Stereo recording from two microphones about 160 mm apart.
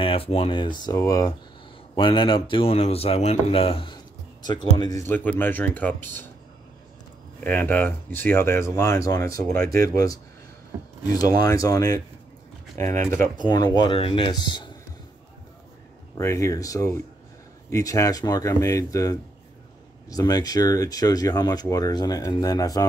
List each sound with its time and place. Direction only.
0.0 s speech: 35° left (ahead or behind)
4.9 s speech: 15° left (ahead or behind)
7.3 s speech: 10° left (ahead or behind)
9.5 s speech: 65° right (ahead or behind)
11.1 s speech: 25° left (ahead or behind)
12.9 s speech: 55° right (ahead or behind)
13.4 s speech: 25° left (ahead or behind)
16.2 s speech: 20° left (ahead or behind)